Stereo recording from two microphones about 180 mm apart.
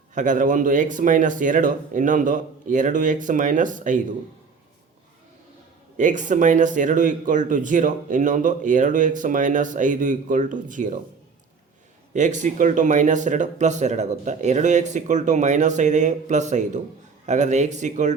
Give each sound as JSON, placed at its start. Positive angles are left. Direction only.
{"t": 0.1, "sound": "speech", "side_deg": -45}
{"t": 6.0, "sound": "speech", "side_deg": -45}
{"t": 12.1, "sound": "speech", "side_deg": -40}